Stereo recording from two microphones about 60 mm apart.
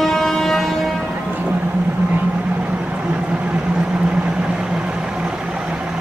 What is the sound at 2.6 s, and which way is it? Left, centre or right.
Vehicle, right.